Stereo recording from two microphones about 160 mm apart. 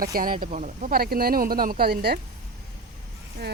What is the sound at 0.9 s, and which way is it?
Speech, 70° right (ahead or behind).